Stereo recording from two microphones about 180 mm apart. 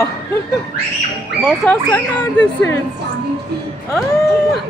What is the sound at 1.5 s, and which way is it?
A woman's voice, 10° left (ahead or behind).